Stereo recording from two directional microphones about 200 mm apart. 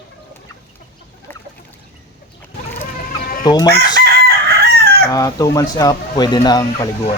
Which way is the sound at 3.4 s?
20° left (ahead or behind).